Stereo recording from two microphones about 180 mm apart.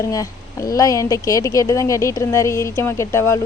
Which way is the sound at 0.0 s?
20° left (ahead or behind).